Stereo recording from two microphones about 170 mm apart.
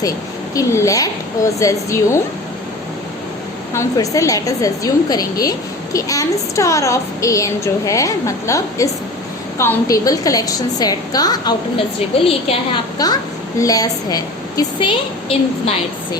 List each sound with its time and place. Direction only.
0.5 s a woman's voice: 20° left (ahead or behind)
3.8 s a woman's voice: 20° left (ahead or behind)
12.1 s a woman's voice: 35° left (ahead or behind)
13.0 s a woman's voice: 20° left (ahead or behind)